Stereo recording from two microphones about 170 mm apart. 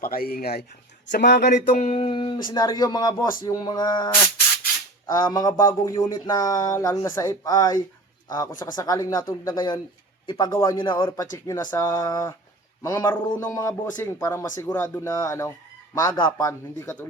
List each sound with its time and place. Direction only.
0.0 s speech: 60° left (ahead or behind)
1.0 s speech: 90° left
1.7 s speech: 40° left (ahead or behind)
5.1 s a man's voice: 20° left (ahead or behind)
16.5 s speech: 15° left (ahead or behind)